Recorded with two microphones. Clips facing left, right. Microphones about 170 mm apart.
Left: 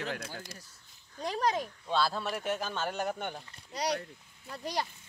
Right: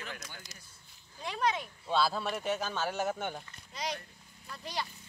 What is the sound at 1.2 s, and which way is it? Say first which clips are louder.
Speech: left 2 dB; 40° left (ahead or behind).